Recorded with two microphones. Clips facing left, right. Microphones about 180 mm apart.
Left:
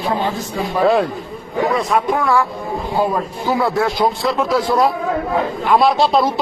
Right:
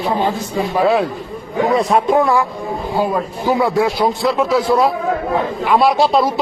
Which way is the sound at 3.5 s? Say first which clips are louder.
Right 2 dB; 15° right (ahead or behind).